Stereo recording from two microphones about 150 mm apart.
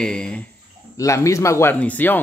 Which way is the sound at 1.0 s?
20° left (ahead or behind).